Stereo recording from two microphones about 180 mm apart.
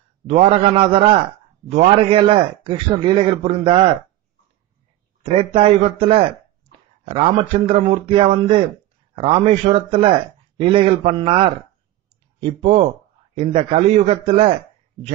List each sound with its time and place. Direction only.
0.3 s a man's voice: 35° right (ahead or behind)
5.2 s a man's voice: 30° right (ahead or behind)